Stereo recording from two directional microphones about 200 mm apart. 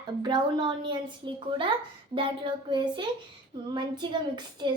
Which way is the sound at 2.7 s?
20° right (ahead or behind).